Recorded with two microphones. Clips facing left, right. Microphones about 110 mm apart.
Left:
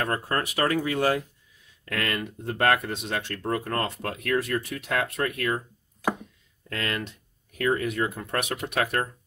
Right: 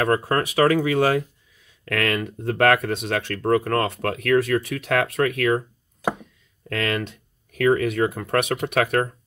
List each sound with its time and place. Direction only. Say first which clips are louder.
0.0 s speech: right 6 dB; 90° right
6.7 s speech: right 6 dB; 80° right